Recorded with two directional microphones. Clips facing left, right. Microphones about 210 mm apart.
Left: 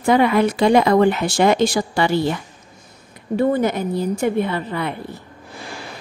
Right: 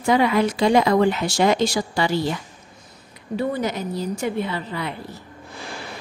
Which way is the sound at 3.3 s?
50° left (ahead or behind).